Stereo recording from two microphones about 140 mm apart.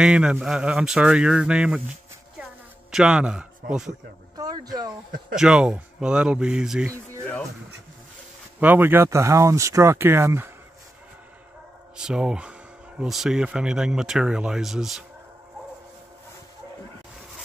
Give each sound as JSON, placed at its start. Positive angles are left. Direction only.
{"t": 0.0, "sound": "speech", "side_deg": -5}
{"t": 2.9, "sound": "speech", "side_deg": -5}
{"t": 4.4, "sound": "speech", "side_deg": -25}
{"t": 5.3, "sound": "speech", "side_deg": -5}
{"t": 8.5, "sound": "speech", "side_deg": -15}
{"t": 12.0, "sound": "speech", "side_deg": -5}